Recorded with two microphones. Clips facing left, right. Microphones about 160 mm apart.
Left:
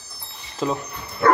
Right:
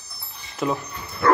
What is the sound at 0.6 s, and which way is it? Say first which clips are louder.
Speech: even; 25° left (ahead or behind).